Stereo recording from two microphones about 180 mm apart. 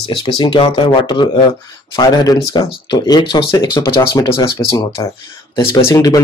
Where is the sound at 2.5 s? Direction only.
30° left (ahead or behind).